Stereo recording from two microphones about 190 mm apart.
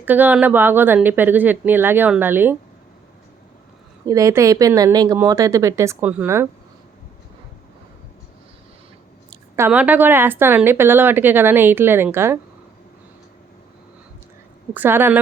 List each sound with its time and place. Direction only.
0.0 s a woman's voice: 10° right (ahead or behind)
4.0 s a woman's voice: 15° right (ahead or behind)
9.6 s a woman's voice: 10° right (ahead or behind)
14.7 s a woman's voice: 10° right (ahead or behind)